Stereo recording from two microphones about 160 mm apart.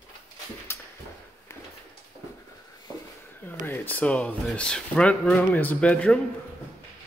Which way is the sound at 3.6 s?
15° left (ahead or behind).